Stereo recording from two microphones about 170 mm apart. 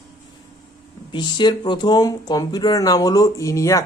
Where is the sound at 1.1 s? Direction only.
25° left (ahead or behind).